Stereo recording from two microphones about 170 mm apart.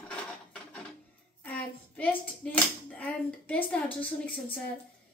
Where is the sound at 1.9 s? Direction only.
10° left (ahead or behind).